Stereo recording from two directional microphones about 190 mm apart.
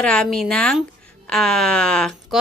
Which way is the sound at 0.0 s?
5° left (ahead or behind).